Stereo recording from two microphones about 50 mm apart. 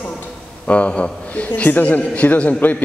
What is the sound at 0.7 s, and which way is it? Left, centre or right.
A man's voice, left.